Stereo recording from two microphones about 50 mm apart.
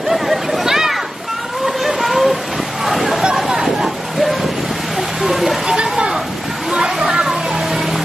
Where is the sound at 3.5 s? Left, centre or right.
Centre.